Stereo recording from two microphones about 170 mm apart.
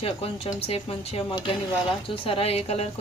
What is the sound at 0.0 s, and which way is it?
A woman's voice, 35° left (ahead or behind).